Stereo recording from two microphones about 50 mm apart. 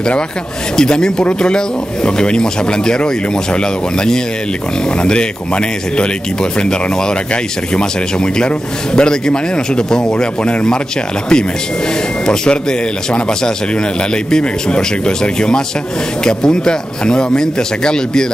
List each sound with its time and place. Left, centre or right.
0.7 s a man's voice: centre
12.3 s a man's voice: centre